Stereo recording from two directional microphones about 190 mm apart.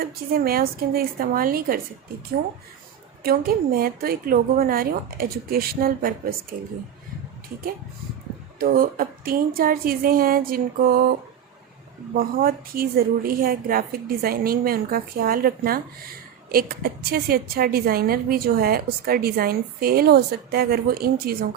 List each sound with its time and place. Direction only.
0.0 s a woman's voice: 50° right (ahead or behind)
3.2 s a woman's voice: 50° right (ahead or behind)
8.5 s a woman's voice: 50° right (ahead or behind)
12.1 s a woman's voice: 50° right (ahead or behind)